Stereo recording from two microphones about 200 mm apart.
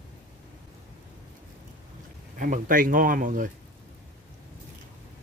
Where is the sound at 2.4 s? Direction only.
40° right (ahead or behind).